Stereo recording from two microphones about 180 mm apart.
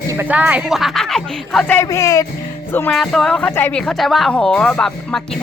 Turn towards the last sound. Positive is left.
turn(degrees=5)  # may be behind; listen again after turning